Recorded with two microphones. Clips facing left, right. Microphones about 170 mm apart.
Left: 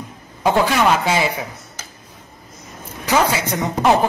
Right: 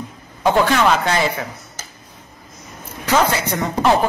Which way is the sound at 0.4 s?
10° left (ahead or behind).